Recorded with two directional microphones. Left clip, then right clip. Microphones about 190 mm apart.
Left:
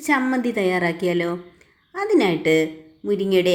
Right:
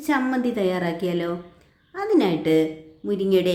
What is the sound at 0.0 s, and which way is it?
A woman's voice, 15° left (ahead or behind).